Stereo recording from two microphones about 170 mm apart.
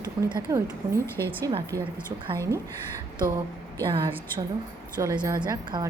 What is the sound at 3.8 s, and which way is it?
Speech, 25° right (ahead or behind).